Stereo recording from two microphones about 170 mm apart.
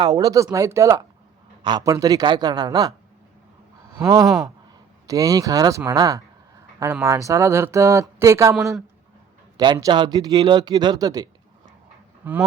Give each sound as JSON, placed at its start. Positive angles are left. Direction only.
{"t": 0.0, "sound": "speech", "side_deg": -20}
{"t": 3.9, "sound": "speech", "side_deg": -20}
{"t": 9.6, "sound": "speech", "side_deg": -20}
{"t": 12.2, "sound": "honk", "side_deg": -10}